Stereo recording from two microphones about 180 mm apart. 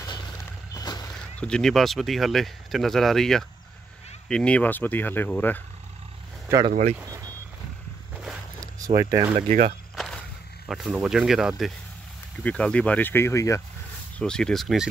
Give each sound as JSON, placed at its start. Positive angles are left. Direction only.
{"t": 0.7, "sound": "boat", "side_deg": 20}
{"t": 1.4, "sound": "speech", "side_deg": 5}
{"t": 6.7, "sound": "speech", "side_deg": -40}
{"t": 8.2, "sound": "a sound", "side_deg": 0}
{"t": 8.8, "sound": "speech", "side_deg": -15}
{"t": 9.5, "sound": "speech", "side_deg": -50}
{"t": 9.9, "sound": "a sound", "side_deg": 5}
{"t": 10.7, "sound": "speech", "side_deg": 0}
{"t": 14.1, "sound": "speech", "side_deg": 5}